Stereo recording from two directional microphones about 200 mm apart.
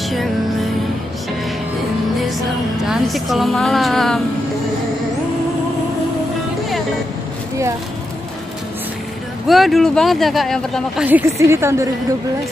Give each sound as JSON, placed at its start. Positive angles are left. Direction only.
{"t": 2.9, "sound": "speech", "side_deg": 0}
{"t": 9.5, "sound": "speech", "side_deg": 0}
{"t": 11.1, "sound": "a woman's voice", "side_deg": -10}